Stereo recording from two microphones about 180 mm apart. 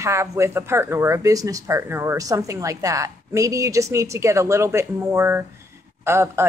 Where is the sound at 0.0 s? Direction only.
15° right (ahead or behind).